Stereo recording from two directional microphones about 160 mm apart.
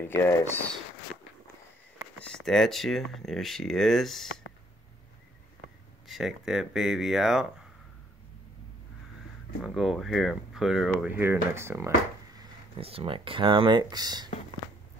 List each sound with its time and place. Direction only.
0.1 s speech: 15° left (ahead or behind)
2.1 s speech: 5° left (ahead or behind)
6.0 s speech: centre (ahead or behind)
9.6 s speech: centre (ahead or behind)
12.7 s speech: 35° right (ahead or behind)